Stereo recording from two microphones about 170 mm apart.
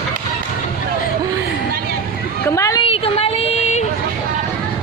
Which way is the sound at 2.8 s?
35° left (ahead or behind).